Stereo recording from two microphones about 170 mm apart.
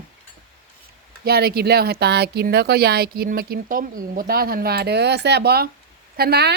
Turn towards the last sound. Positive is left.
turn(degrees=-70)  # may be behind; listen again after turning